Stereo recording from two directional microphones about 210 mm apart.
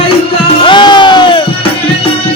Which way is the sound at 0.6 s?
20° left (ahead or behind).